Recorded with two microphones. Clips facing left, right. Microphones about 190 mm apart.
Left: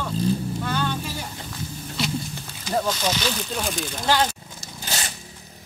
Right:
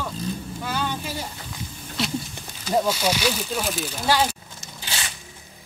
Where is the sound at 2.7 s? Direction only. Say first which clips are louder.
Right 2 dB; 10° right (ahead or behind).